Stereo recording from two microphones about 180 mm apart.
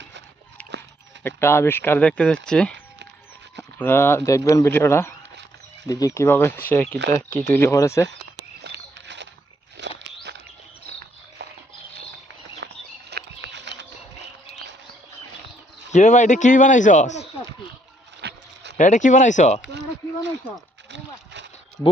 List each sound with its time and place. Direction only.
0.6 s dog: 5° left (ahead or behind)
1.4 s speech: 15° left (ahead or behind)
8.6 s a sound: 75° right (ahead or behind)
9.8 s walk: 75° right (ahead or behind)
11.4 s dog: 65° right (ahead or behind)
12.6 s a sound: 70° right (ahead or behind)
15.9 s a man's voice: 40° left (ahead or behind)
18.2 s a sound: 70° right (ahead or behind)
18.8 s a man's voice: 45° left (ahead or behind)